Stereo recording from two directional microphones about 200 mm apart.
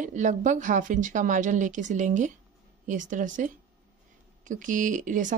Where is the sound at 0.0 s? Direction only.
40° right (ahead or behind).